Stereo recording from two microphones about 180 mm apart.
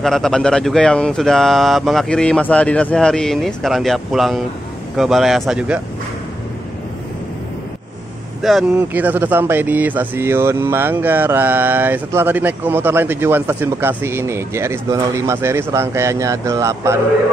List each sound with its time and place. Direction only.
0.0 s speech: centre (ahead or behind)
8.4 s speech: centre (ahead or behind)